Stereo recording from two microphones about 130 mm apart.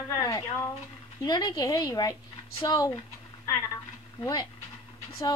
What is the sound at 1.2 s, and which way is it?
Speech, 30° left (ahead or behind).